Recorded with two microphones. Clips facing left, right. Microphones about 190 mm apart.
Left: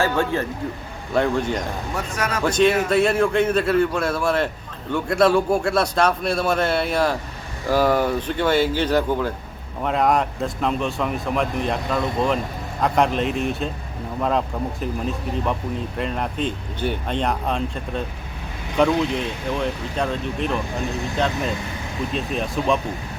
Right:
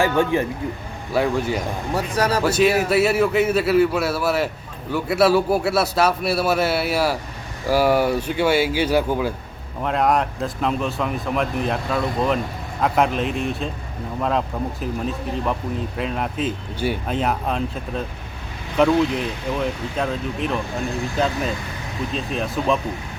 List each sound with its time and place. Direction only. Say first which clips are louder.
0.0 s speech: right 2 dB; 15° right (ahead or behind)
1.1 s a man's voice: even; 5° right (ahead or behind)
2.1 s a man's voice: right 6 dB; 35° right (ahead or behind)
2.4 s a man's voice: left 3 dB; 5° right (ahead or behind)